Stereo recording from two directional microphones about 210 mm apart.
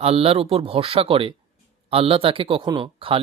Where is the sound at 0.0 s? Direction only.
30° right (ahead or behind).